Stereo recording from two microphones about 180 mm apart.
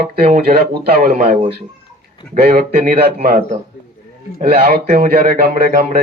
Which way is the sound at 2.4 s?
55° right (ahead or behind).